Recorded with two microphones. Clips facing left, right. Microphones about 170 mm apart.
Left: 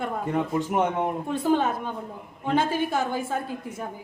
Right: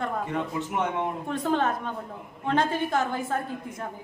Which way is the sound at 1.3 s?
5° left (ahead or behind).